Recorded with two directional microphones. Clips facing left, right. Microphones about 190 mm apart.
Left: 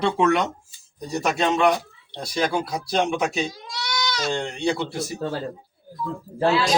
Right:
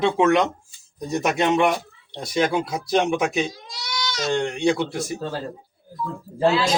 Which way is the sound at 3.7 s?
60° left (ahead or behind).